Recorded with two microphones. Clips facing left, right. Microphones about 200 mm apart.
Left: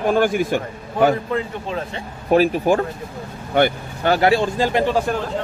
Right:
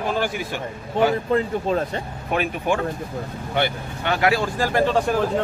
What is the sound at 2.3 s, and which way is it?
Speech, 35° left (ahead or behind).